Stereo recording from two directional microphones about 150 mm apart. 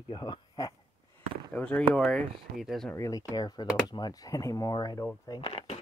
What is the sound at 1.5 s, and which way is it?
Speech, 5° left (ahead or behind).